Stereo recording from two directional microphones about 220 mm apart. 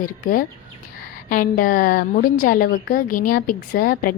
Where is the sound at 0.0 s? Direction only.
40° left (ahead or behind).